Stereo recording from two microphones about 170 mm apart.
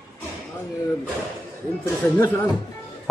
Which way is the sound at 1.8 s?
15° left (ahead or behind).